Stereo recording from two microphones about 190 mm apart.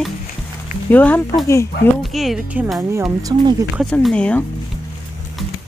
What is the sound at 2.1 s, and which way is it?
Speech, centre (ahead or behind).